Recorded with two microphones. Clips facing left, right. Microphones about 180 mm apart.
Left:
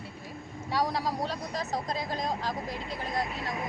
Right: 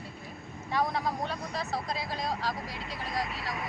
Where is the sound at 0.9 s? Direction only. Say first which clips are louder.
Left 1 dB; 35° left (ahead or behind).